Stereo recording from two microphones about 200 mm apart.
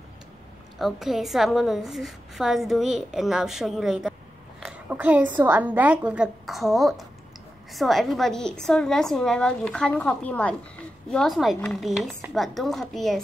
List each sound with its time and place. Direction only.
0.7 s a woman's voice: centre (ahead or behind)